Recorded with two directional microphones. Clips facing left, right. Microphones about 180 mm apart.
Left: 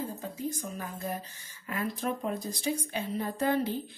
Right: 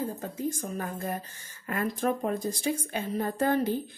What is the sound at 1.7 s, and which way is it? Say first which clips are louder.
A woman's voice: right 4 dB; 50° right (ahead or behind).